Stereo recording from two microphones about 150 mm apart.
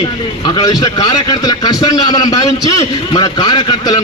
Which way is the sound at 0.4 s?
25° left (ahead or behind).